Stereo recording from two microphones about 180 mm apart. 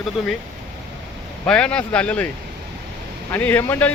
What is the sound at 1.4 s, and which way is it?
Speech, 5° left (ahead or behind).